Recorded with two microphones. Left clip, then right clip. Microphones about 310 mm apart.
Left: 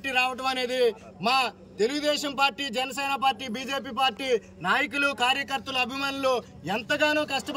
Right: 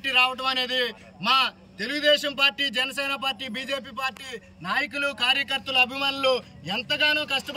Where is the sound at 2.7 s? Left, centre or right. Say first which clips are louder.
Right 2 dB; centre.